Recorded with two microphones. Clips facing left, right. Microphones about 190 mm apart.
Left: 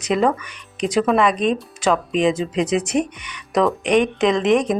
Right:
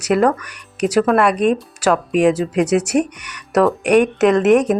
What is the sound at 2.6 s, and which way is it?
Speech, 75° right (ahead or behind).